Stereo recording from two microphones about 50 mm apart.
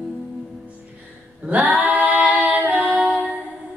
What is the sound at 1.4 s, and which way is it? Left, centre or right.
Singing, centre.